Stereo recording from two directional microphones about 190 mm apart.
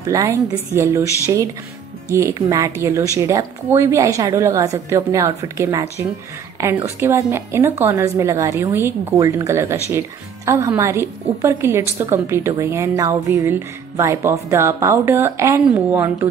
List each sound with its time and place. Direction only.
0.0 s a woman's voice: 15° right (ahead or behind)